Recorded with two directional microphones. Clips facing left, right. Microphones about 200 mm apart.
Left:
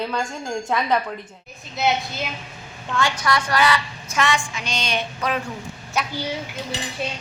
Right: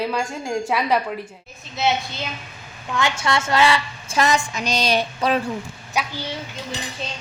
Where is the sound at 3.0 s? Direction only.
25° right (ahead or behind).